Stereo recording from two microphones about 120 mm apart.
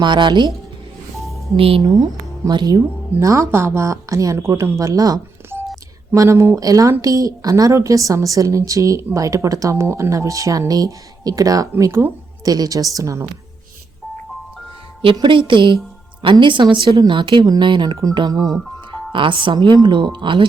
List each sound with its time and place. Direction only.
0.0 s speech: 40° right (ahead or behind)
1.5 s speech: 55° right (ahead or behind)
2.5 s speech: 35° right (ahead or behind)
3.2 s speech: 25° right (ahead or behind)
12.5 s speech: 30° right (ahead or behind)
15.1 s a woman's voice: 40° right (ahead or behind)